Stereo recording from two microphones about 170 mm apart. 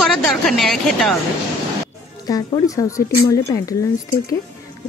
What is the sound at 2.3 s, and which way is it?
Speech, 20° left (ahead or behind).